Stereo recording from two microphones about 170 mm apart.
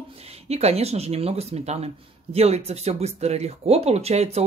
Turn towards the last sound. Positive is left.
turn(degrees=-40)  # may be behind; listen again after turning